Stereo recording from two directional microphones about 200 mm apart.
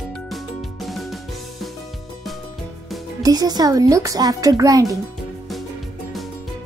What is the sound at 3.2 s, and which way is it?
A child's voice, 20° right (ahead or behind).